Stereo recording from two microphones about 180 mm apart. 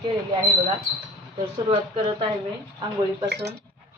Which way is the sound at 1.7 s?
30° right (ahead or behind).